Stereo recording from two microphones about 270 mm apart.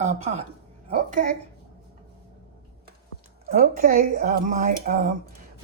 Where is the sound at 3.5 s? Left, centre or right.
Right.